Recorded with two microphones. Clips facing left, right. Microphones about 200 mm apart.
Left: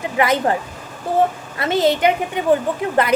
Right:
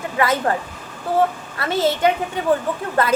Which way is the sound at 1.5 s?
20° left (ahead or behind).